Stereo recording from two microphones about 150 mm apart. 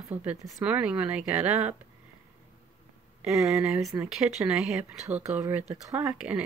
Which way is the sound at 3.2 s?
Centre (ahead or behind).